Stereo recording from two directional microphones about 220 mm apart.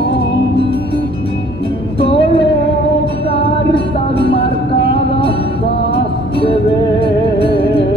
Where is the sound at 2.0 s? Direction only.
25° left (ahead or behind).